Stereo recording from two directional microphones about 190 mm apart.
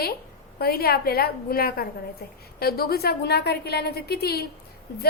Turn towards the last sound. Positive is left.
turn(degrees=55)  # may be behind; listen again after turning